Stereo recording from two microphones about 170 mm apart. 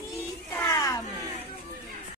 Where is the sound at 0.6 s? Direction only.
20° left (ahead or behind).